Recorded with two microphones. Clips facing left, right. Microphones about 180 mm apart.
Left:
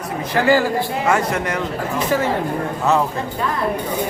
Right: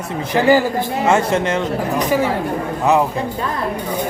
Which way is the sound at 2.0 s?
15° right (ahead or behind).